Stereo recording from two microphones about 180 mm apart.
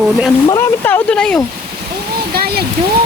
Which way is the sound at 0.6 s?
10° left (ahead or behind).